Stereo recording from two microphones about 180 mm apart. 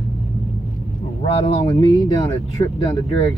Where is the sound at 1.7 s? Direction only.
20° left (ahead or behind).